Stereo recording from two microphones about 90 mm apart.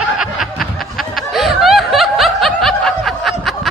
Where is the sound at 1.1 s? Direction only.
Centre (ahead or behind).